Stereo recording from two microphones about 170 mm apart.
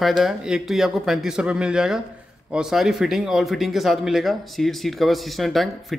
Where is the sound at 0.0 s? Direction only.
Centre (ahead or behind).